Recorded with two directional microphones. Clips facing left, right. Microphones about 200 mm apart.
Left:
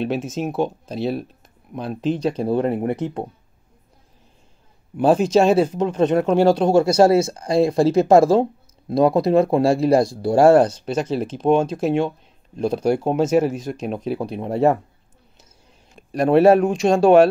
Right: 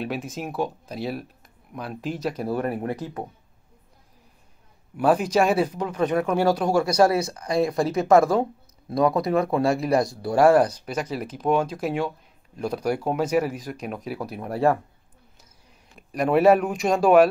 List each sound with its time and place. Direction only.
0.0 s speech: 25° left (ahead or behind)
4.9 s speech: 25° left (ahead or behind)
16.1 s speech: 30° left (ahead or behind)